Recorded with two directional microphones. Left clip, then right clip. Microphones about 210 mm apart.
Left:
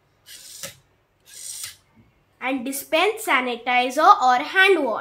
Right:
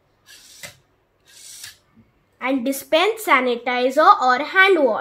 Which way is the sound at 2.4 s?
30° right (ahead or behind).